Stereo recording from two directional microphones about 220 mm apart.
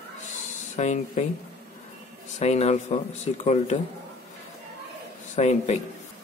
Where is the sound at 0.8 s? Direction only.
30° left (ahead or behind).